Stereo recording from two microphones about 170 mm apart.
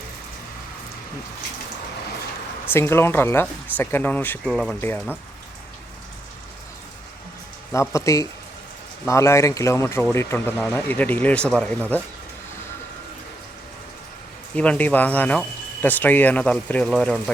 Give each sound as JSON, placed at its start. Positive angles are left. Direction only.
{"t": 2.7, "sound": "speech", "side_deg": 15}
{"t": 4.8, "sound": "speech", "side_deg": 10}
{"t": 7.7, "sound": "speech", "side_deg": 15}
{"t": 14.5, "sound": "speech", "side_deg": 10}